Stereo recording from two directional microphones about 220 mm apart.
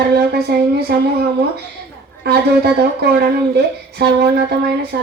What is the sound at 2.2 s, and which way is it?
Speech, 45° right (ahead or behind).